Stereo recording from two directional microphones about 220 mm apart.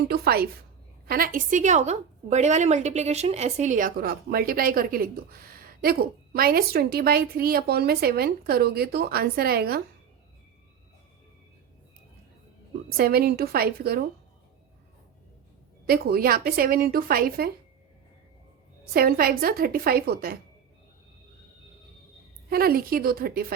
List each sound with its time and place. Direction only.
0.1 s a woman's voice: 45° right (ahead or behind)
13.0 s a woman's voice: 45° right (ahead or behind)
15.9 s a woman's voice: 45° right (ahead or behind)
18.9 s a woman's voice: 40° right (ahead or behind)
22.4 s a woman's voice: 45° right (ahead or behind)